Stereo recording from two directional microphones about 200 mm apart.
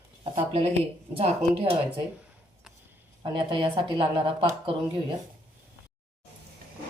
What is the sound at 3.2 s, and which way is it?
Speech, 25° right (ahead or behind).